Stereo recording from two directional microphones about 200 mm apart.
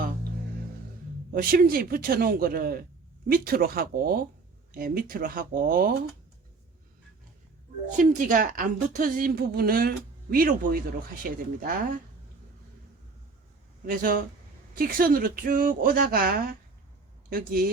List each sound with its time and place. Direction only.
1.3 s a woman's voice: 45° right (ahead or behind)
7.9 s a woman's voice: 40° right (ahead or behind)
13.8 s a woman's voice: 45° right (ahead or behind)